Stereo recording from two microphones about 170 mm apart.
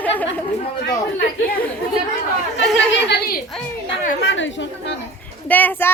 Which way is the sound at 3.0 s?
75° left (ahead or behind).